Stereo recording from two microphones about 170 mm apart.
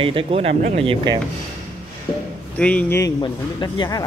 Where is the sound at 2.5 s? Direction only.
10° left (ahead or behind).